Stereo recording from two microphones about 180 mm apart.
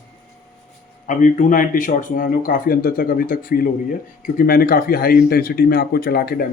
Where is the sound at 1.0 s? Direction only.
45° left (ahead or behind).